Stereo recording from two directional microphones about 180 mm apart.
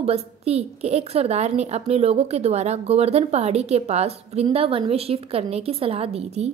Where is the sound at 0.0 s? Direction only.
35° right (ahead or behind).